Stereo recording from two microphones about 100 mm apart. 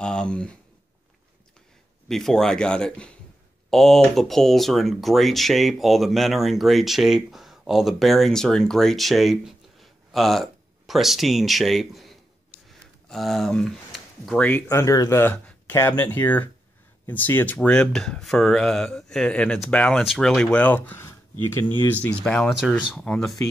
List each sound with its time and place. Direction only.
0.0 s speech: 10° left (ahead or behind)
2.0 s speech: 5° left (ahead or behind)
13.1 s speech: centre (ahead or behind)
14.7 s speech: 30° left (ahead or behind)
15.3 s a sound: 15° left (ahead or behind)
16.0 s speech: 20° left (ahead or behind)
17.6 s speech: 10° left (ahead or behind)
22.6 s speech: 10° right (ahead or behind)
22.9 s speech: 5° left (ahead or behind)